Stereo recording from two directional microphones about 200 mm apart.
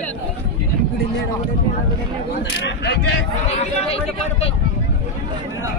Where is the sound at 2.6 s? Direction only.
60° left (ahead or behind).